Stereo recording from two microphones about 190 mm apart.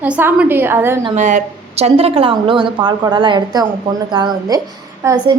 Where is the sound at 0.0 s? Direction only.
10° right (ahead or behind).